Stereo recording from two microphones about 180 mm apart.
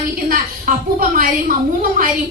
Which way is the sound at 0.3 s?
50° right (ahead or behind).